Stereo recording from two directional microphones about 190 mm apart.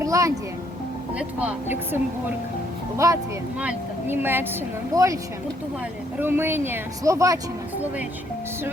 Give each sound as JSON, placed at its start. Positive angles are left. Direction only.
{"t": 0.0, "sound": "music", "side_deg": -15}
{"t": 1.4, "sound": "speech", "side_deg": -10}
{"t": 3.0, "sound": "speech", "side_deg": -15}
{"t": 6.1, "sound": "speech", "side_deg": -10}